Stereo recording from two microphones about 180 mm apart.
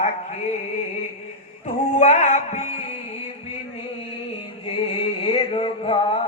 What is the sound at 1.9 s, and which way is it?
Music, 40° left (ahead or behind).